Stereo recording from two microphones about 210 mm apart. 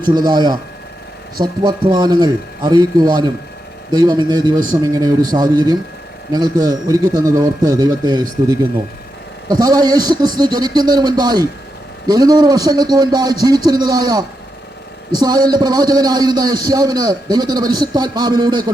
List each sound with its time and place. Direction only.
0.0 s a man's voice: 20° right (ahead or behind)
1.6 s a man's voice: 20° right (ahead or behind)